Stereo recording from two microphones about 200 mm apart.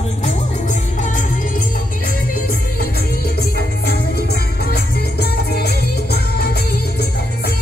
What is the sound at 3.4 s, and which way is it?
Music, 55° left (ahead or behind).